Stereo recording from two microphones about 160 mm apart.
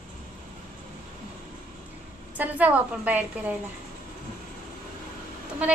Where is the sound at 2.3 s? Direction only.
10° right (ahead or behind).